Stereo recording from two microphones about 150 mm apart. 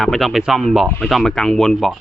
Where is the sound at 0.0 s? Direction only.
Centre (ahead or behind).